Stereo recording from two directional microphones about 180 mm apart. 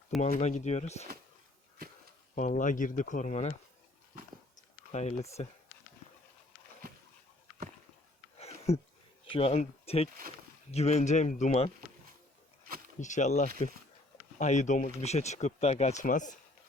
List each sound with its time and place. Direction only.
0.2 s speech: 40° left (ahead or behind)
2.6 s speech: 45° left (ahead or behind)
4.9 s speech: 40° left (ahead or behind)
8.7 s speech: 35° left (ahead or behind)
13.0 s speech: 40° left (ahead or behind)